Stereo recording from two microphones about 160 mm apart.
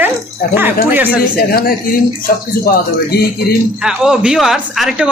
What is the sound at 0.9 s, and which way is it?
Speech, 10° right (ahead or behind).